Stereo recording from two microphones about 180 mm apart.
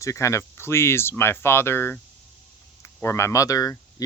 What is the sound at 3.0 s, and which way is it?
Speech, 15° left (ahead or behind).